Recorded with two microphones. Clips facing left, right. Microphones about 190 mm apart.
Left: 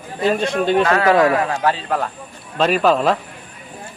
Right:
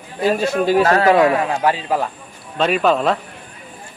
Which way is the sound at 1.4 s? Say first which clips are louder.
Right 1 dB; 15° right (ahead or behind).